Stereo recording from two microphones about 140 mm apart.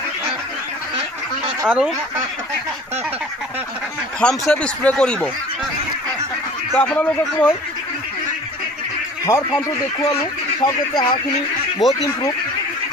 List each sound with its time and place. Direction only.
1.6 s speech: 5° right (ahead or behind)
4.2 s speech: 5° left (ahead or behind)
6.7 s speech: 10° left (ahead or behind)
9.2 s a man's voice: 25° left (ahead or behind)
11.8 s speech: centre (ahead or behind)